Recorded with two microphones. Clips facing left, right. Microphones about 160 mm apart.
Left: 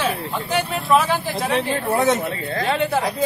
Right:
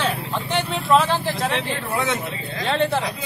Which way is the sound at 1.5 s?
40° left (ahead or behind).